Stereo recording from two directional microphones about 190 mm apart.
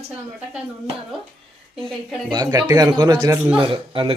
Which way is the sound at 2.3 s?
20° right (ahead or behind).